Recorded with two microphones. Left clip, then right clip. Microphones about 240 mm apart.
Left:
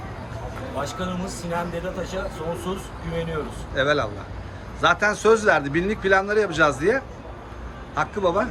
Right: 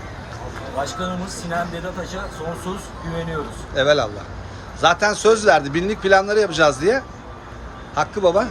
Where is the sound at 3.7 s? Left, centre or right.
Centre.